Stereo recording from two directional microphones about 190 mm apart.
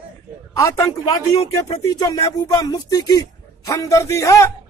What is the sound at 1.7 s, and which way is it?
A man's voice, 20° left (ahead or behind).